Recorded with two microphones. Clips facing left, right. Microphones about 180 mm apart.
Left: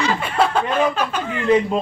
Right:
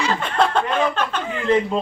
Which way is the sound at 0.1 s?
5° left (ahead or behind).